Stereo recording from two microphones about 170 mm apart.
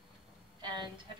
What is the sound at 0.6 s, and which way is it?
Speech, 25° right (ahead or behind).